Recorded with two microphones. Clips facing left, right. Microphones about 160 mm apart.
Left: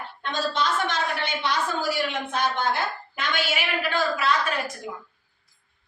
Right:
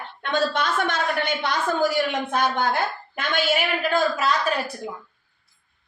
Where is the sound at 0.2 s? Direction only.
60° right (ahead or behind); by 4.7 s 40° right (ahead or behind).